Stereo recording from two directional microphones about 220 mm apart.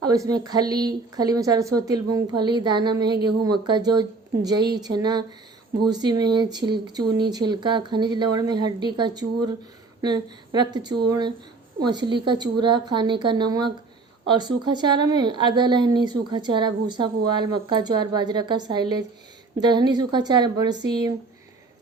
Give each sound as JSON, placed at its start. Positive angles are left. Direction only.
{"t": 0.0, "sound": "a woman's voice", "side_deg": -15}